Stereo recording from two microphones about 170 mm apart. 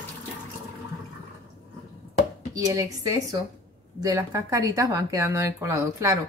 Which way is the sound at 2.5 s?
20° right (ahead or behind).